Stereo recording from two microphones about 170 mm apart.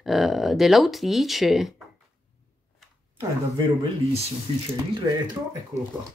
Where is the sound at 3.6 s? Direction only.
30° right (ahead or behind).